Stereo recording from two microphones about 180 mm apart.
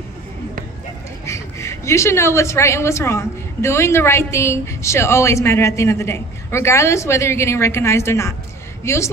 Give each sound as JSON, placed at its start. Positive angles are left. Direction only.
{"t": 1.2, "sound": "a woman's voice", "side_deg": 15}